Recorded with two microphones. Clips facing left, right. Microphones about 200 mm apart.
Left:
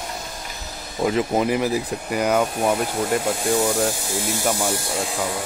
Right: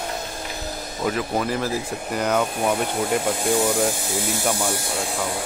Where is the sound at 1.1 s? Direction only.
20° left (ahead or behind).